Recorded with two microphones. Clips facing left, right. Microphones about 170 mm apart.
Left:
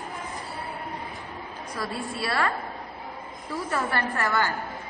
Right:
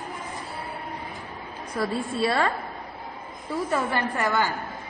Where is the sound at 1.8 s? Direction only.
25° right (ahead or behind).